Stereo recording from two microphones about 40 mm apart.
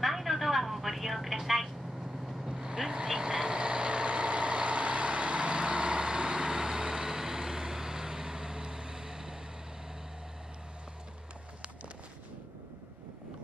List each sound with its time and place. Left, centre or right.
0.0 s telephone: centre
2.2 s vehicle: centre